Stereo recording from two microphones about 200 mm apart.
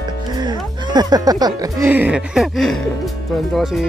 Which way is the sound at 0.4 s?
20° right (ahead or behind).